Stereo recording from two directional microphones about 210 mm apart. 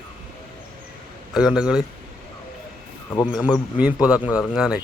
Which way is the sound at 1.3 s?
5° right (ahead or behind).